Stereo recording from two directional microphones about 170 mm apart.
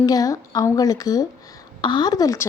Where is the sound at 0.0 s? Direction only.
20° left (ahead or behind).